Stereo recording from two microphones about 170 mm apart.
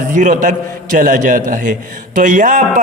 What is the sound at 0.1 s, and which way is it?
A man's voice, 50° right (ahead or behind).